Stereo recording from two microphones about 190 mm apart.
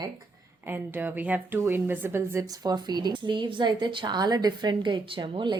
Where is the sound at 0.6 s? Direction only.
10° right (ahead or behind).